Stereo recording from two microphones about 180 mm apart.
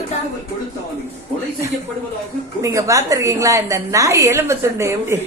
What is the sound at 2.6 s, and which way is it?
A woman's voice, 15° right (ahead or behind).